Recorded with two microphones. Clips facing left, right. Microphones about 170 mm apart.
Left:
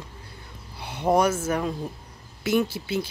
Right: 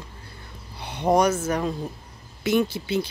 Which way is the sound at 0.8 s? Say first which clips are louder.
Right 1 dB; 5° left (ahead or behind).